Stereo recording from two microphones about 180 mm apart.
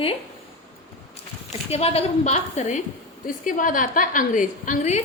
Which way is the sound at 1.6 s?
35° left (ahead or behind).